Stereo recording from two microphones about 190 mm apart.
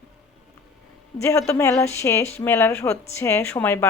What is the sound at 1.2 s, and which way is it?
A woman's voice, 15° left (ahead or behind).